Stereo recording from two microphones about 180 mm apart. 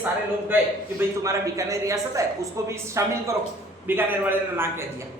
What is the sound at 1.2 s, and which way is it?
A man's voice, 15° right (ahead or behind).